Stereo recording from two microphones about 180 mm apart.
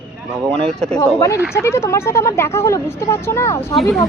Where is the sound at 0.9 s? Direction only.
20° left (ahead or behind).